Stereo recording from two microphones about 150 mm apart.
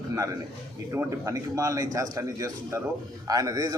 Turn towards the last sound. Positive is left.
turn(degrees=-25)  # may be behind; listen again after turning